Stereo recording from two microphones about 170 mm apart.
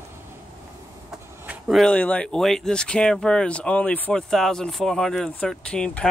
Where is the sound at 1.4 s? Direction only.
5° right (ahead or behind).